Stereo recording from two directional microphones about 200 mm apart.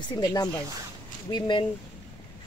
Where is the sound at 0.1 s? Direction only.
20° left (ahead or behind).